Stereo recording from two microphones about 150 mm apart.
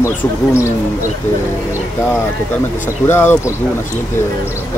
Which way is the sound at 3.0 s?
15° left (ahead or behind).